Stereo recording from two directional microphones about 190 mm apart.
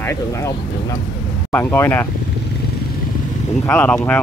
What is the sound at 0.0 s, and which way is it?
Speech, 15° left (ahead or behind).